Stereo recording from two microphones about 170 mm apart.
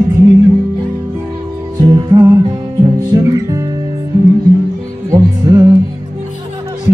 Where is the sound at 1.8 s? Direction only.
25° right (ahead or behind).